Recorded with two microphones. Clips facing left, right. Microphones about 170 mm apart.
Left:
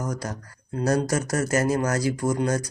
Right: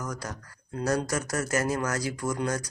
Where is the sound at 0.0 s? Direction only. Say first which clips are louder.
Left 5 dB; 35° left (ahead or behind).